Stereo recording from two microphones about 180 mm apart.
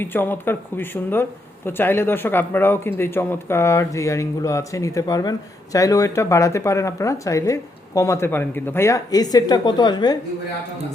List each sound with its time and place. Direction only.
0.0 s speech: 10° left (ahead or behind)